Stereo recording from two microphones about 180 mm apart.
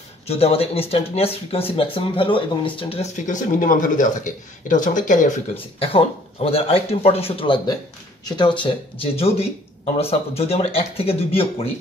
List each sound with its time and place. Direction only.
0.3 s speech: 35° left (ahead or behind)
5.8 s speech: 30° left (ahead or behind)